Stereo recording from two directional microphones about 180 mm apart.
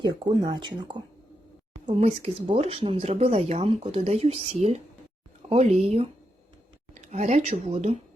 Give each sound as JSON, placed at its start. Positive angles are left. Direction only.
{"t": 0.0, "sound": "speech", "side_deg": -25}